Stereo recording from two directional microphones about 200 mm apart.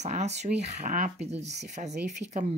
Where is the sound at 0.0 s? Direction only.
35° right (ahead or behind).